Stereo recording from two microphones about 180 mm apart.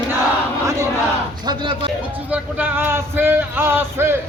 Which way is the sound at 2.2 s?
10° right (ahead or behind).